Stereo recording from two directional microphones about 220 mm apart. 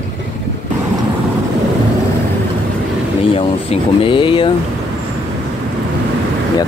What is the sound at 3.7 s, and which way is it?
Speech, 25° left (ahead or behind).